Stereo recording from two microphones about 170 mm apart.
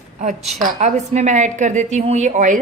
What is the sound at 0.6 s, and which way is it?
A woman's voice, 45° right (ahead or behind).